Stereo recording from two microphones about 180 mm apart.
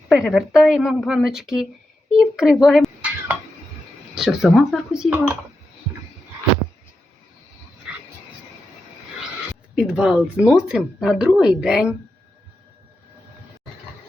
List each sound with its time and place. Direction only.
0.1 s a child's voice: centre (ahead or behind)
4.1 s speech: 5° right (ahead or behind)
7.9 s a sound: 5° right (ahead or behind)
9.7 s speech: 5° right (ahead or behind)